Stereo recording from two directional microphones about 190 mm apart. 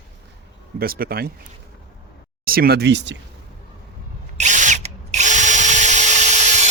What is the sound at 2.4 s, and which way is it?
Speech, 50° right (ahead or behind).